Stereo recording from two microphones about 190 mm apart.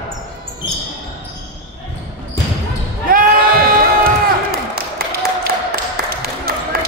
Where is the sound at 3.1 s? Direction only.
50° right (ahead or behind).